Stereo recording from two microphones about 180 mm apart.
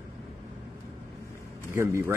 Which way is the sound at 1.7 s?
15° right (ahead or behind).